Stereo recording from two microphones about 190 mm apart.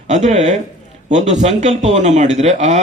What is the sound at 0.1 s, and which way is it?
A man's voice, 35° right (ahead or behind).